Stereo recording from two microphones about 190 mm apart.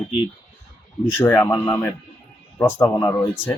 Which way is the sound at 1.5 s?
20° left (ahead or behind).